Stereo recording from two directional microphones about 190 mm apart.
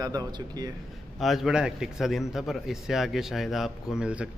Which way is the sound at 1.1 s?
Centre (ahead or behind).